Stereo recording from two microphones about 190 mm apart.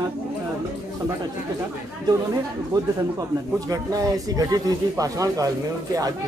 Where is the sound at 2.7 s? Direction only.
20° right (ahead or behind).